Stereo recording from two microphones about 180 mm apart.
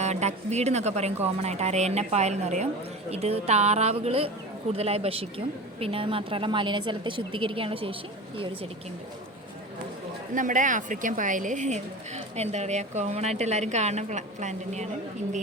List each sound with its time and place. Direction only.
0.0 s a woman's voice: 40° right (ahead or behind)
10.3 s a woman's voice: 45° right (ahead or behind)